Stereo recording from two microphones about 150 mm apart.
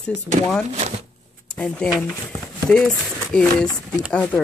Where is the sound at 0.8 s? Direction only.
45° right (ahead or behind).